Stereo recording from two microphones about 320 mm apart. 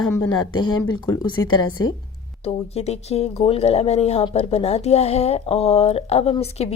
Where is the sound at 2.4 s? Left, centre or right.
Centre.